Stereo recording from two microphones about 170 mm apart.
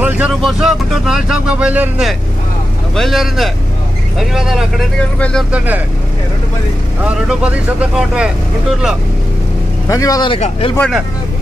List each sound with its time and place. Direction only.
0.0 s speech: 5° right (ahead or behind)
7.2 s speech: 5° right (ahead or behind)
9.8 s speech: 20° left (ahead or behind)
10.8 s speech: centre (ahead or behind)